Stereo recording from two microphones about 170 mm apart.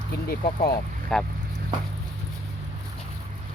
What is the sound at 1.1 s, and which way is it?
Speech, 5° left (ahead or behind).